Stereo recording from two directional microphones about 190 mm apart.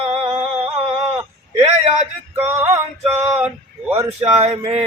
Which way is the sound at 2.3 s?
10° right (ahead or behind).